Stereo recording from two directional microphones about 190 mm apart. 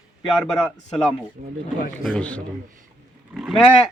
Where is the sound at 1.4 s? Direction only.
40° right (ahead or behind).